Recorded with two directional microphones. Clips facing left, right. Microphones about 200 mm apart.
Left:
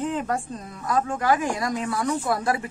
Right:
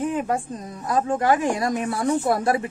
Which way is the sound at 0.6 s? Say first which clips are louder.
Right 2 dB; 25° right (ahead or behind).